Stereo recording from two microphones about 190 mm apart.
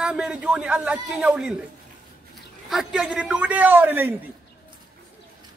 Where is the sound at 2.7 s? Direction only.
Centre (ahead or behind).